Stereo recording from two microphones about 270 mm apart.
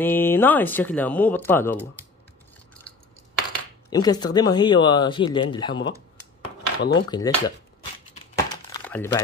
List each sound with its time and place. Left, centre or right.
0.0 s speech: centre
3.9 s speech: centre
6.1 s a sound: left
7.1 s speech: centre
8.1 s crumpling: centre